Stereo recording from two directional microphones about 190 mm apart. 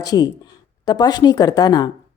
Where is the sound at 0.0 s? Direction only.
20° left (ahead or behind).